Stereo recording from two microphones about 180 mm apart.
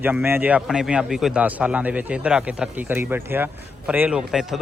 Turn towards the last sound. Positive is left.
turn(degrees=0)  # may be behind; listen again after turning